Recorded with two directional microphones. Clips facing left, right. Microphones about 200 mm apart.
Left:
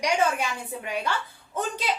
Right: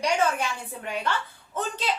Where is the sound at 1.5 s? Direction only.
10° left (ahead or behind).